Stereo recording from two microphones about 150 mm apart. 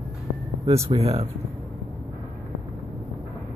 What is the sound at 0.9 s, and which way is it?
Speech, 45° right (ahead or behind).